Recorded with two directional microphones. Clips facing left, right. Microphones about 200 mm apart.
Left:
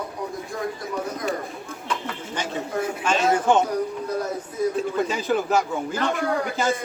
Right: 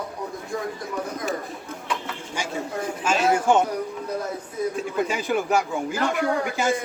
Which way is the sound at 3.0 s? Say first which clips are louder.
Even; 5° right (ahead or behind).